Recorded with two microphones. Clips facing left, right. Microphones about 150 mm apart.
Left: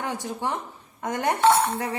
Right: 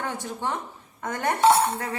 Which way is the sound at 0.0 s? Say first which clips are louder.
Left 1 dB; 15° left (ahead or behind).